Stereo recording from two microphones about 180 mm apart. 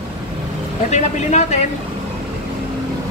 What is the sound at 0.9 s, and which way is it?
Speech, 40° left (ahead or behind).